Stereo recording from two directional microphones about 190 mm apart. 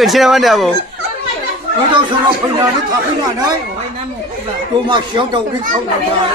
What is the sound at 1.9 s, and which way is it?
Speech, 25° right (ahead or behind).